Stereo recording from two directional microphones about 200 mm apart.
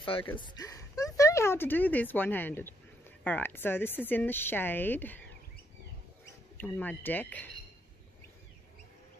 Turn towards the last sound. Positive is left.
turn(degrees=10)  # may be behind; listen again after turning